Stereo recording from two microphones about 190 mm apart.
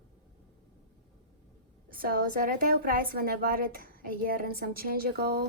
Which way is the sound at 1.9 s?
50° right (ahead or behind).